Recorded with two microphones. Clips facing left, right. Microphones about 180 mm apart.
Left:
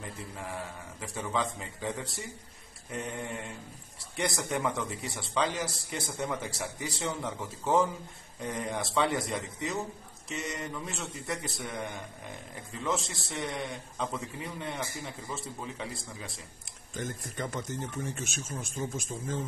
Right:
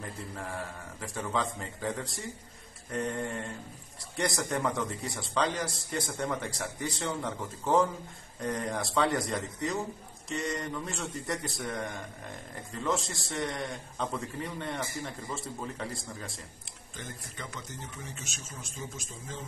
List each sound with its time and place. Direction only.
0.0 s a man's voice: centre (ahead or behind)
16.9 s speech: 45° left (ahead or behind)